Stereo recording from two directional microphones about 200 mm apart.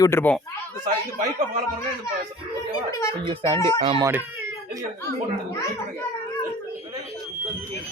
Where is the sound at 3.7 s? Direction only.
30° right (ahead or behind).